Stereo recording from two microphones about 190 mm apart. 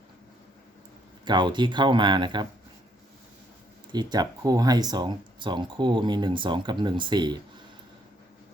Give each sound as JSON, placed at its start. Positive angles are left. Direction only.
{"t": 1.2, "sound": "speech", "side_deg": -25}
{"t": 3.9, "sound": "speech", "side_deg": -20}